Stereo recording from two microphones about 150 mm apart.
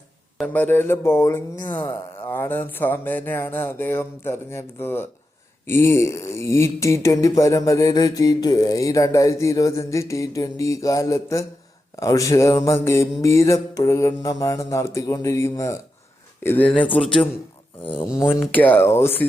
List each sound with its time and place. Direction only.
0.4 s speech: 10° left (ahead or behind)
17.8 s speech: 35° left (ahead or behind)
18.2 s speech: 15° left (ahead or behind)